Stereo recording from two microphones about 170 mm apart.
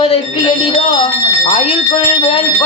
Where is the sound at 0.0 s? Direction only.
35° left (ahead or behind).